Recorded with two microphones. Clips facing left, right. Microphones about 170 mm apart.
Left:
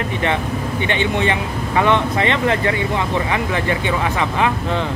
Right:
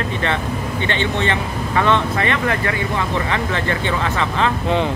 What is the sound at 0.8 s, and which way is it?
Speech, 15° left (ahead or behind).